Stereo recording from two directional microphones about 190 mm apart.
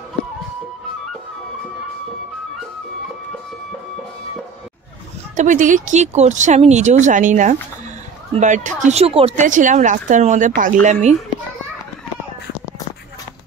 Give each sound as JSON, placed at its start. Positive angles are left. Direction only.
{"t": 5.3, "sound": "speech", "side_deg": -40}